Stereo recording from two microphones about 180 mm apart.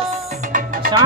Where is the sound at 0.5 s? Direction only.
50° right (ahead or behind).